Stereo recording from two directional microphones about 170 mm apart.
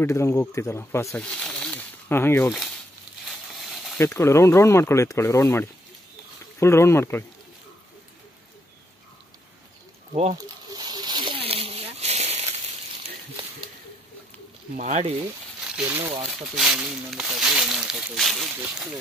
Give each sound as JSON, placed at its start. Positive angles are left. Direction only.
{"t": 0.0, "sound": "speech", "side_deg": 15}
{"t": 1.2, "sound": "snake", "side_deg": 5}
{"t": 3.3, "sound": "a sound", "side_deg": 0}
{"t": 4.0, "sound": "speech", "side_deg": 15}
{"t": 10.3, "sound": "a sound", "side_deg": -25}
{"t": 14.8, "sound": "speech", "side_deg": -45}
{"t": 15.6, "sound": "crumpling", "side_deg": -5}
{"t": 16.5, "sound": "speech", "side_deg": -5}